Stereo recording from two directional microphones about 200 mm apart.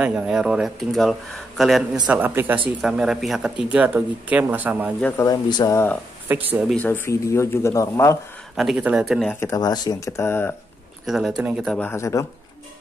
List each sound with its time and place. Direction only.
0.0 s speech: 5° right (ahead or behind)
5.0 s speech: 15° left (ahead or behind)
6.2 s speech: 10° right (ahead or behind)
6.7 s speech: 10° left (ahead or behind)
8.5 s speech: 5° right (ahead or behind)
9.4 s speech: 15° left (ahead or behind)
11.1 s speech: centre (ahead or behind); by 12.3 s 15° left (ahead or behind)